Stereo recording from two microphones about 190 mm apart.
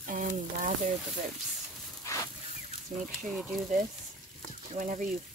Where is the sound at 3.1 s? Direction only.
Centre (ahead or behind).